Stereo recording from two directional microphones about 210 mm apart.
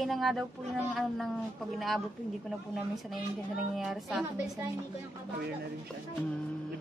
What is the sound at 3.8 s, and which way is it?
Speech, centre (ahead or behind).